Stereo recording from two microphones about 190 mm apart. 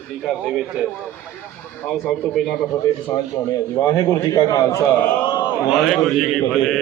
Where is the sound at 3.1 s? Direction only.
20° left (ahead or behind).